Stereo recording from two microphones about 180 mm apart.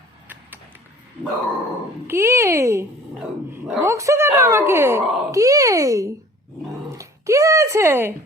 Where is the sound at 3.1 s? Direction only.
5° right (ahead or behind).